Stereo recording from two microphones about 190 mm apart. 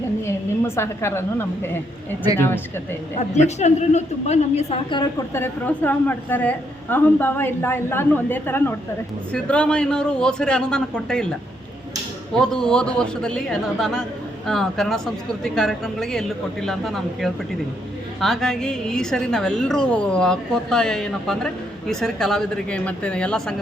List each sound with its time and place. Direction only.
0.8 s a woman's voice: 15° left (ahead or behind)
3.2 s a woman's voice: 35° left (ahead or behind)
5.3 s a woman's voice: 10° left (ahead or behind)